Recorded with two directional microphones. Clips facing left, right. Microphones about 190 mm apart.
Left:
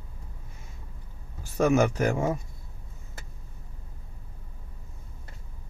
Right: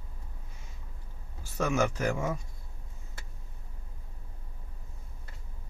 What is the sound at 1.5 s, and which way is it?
Speech, 55° left (ahead or behind).